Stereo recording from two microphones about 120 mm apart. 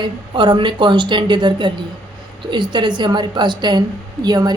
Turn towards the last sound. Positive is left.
turn(degrees=-35)  # may be behind; listen again after turning